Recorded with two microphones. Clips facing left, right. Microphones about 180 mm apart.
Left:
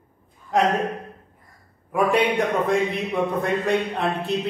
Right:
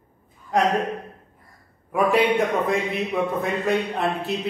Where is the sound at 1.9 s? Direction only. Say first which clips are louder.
Right 1 dB; centre (ahead or behind).